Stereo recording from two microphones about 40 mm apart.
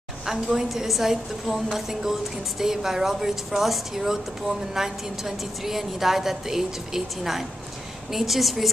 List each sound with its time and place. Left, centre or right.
0.3 s a woman's voice: centre